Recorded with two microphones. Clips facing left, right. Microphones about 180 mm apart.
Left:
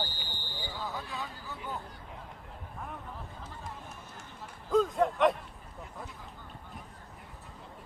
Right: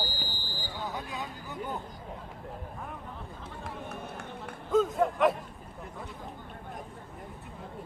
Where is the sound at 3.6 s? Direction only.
60° right (ahead or behind).